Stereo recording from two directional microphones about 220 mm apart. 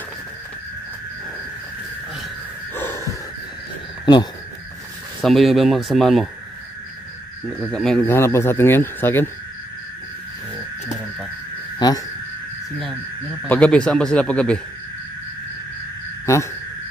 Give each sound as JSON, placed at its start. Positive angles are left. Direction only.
{"t": 2.7, "sound": "wheeze", "side_deg": 10}
{"t": 4.0, "sound": "a sound", "side_deg": 20}
{"t": 5.2, "sound": "a man's voice", "side_deg": 0}
{"t": 7.4, "sound": "speech", "side_deg": 5}
{"t": 11.8, "sound": "speech", "side_deg": 20}
{"t": 13.5, "sound": "a man's voice", "side_deg": 5}
{"t": 16.3, "sound": "speech", "side_deg": 15}